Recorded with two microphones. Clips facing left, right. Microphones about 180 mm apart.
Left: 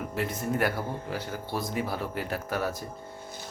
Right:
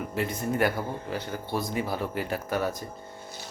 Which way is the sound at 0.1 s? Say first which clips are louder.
Right 1 dB; centre (ahead or behind).